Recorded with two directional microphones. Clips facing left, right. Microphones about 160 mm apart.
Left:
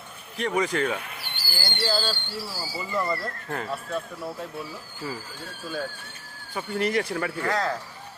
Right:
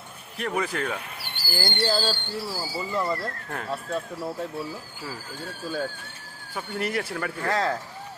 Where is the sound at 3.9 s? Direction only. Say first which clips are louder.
Right 1 dB; 30° right (ahead or behind).